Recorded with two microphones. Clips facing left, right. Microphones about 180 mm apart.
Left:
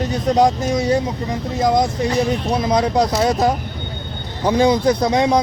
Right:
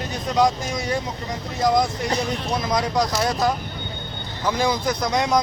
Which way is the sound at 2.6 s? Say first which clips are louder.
Left 5 dB; 30° left (ahead or behind).